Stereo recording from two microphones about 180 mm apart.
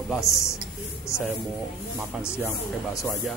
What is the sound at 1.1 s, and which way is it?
Speech, 15° left (ahead or behind).